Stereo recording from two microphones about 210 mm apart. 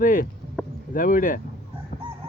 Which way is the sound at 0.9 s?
40° left (ahead or behind).